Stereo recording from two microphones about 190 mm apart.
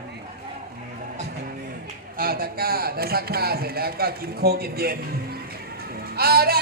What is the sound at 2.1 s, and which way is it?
Speech, 50° right (ahead or behind).